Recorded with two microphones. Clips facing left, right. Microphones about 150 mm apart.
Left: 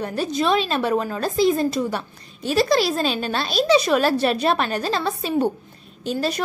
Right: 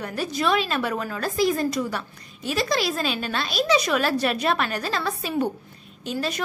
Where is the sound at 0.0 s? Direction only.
30° left (ahead or behind).